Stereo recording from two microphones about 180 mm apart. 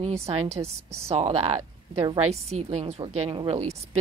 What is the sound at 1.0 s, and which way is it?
Speech, 35° right (ahead or behind).